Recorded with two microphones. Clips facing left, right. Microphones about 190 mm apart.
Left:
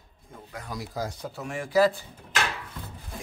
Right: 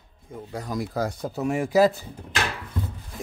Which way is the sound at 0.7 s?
60° right (ahead or behind).